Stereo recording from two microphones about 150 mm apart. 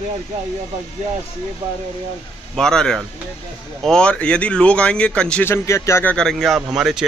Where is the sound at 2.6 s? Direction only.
5° left (ahead or behind).